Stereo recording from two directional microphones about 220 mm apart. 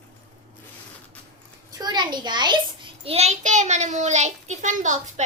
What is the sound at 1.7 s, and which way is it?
A child's voice, 20° right (ahead or behind).